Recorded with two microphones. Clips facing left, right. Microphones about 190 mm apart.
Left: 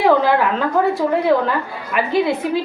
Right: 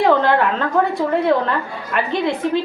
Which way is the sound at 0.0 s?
5° left (ahead or behind).